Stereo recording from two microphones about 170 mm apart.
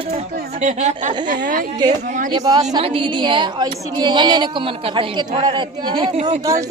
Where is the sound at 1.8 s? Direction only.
25° right (ahead or behind).